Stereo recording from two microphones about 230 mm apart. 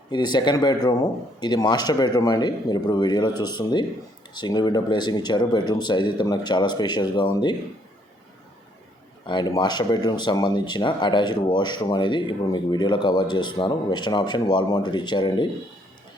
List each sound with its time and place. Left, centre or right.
0.1 s speech: centre
9.2 s speech: centre